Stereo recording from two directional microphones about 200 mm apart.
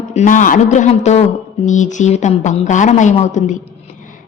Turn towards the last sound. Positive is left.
turn(degrees=35)  # may be behind; listen again after turning